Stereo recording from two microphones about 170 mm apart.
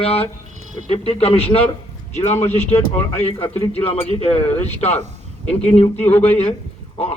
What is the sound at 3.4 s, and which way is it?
A man's voice, 35° left (ahead or behind).